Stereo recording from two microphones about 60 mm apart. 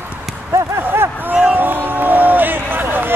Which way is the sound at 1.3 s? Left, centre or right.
Right.